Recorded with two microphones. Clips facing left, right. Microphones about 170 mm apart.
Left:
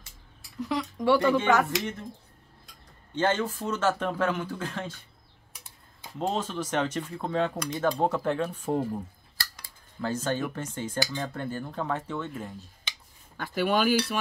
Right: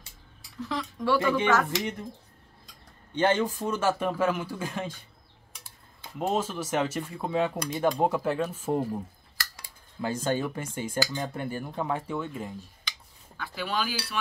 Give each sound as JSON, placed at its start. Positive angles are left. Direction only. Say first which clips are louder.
{"t": 0.6, "sound": "speech", "louder": "left 3 dB", "side_deg": 15}
{"t": 3.2, "sound": "speech", "louder": "right 2 dB", "side_deg": -15}
{"t": 6.1, "sound": "speech", "louder": "right 1 dB", "side_deg": -10}
{"t": 10.0, "sound": "speech", "louder": "right 1 dB", "side_deg": -10}
{"t": 13.4, "sound": "speech", "louder": "left 6 dB", "side_deg": 50}